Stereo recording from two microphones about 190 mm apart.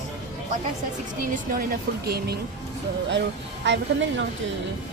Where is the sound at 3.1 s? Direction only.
70° right (ahead or behind).